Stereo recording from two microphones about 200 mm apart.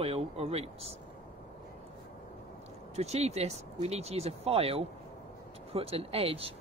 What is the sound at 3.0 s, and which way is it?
Speech, 35° right (ahead or behind).